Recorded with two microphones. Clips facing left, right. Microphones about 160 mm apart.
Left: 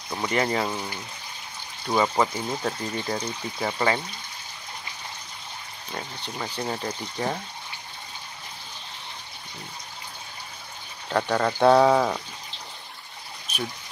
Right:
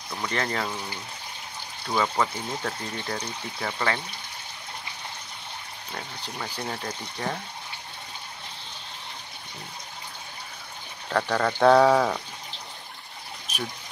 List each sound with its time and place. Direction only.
0.1 s speech: 15° left (ahead or behind)
2.0 s speech: 15° left (ahead or behind)
6.3 s speech: 15° left (ahead or behind)
11.1 s speech: 10° left (ahead or behind)